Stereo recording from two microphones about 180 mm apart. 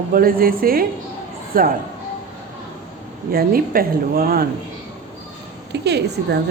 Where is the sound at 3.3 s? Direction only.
55° right (ahead or behind).